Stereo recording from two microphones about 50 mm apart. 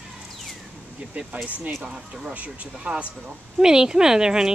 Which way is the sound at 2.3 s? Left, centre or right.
Right.